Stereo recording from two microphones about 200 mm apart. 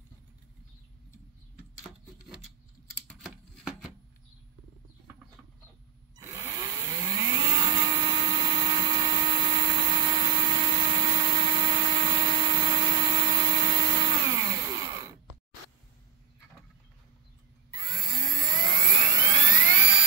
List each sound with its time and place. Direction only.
3.1 s shuffling cards: centre (ahead or behind)
6.1 s a sound: 15° right (ahead or behind)
18.4 s jet engine: 20° right (ahead or behind)